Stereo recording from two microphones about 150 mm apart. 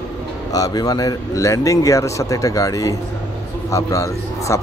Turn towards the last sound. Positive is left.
turn(degrees=20)  # may be behind; listen again after turning